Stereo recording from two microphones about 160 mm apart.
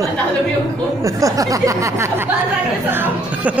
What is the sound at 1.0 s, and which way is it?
Speech, 20° right (ahead or behind).